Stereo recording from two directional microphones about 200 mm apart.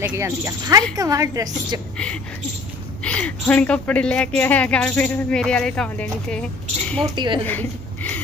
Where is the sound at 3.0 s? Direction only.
5° left (ahead or behind).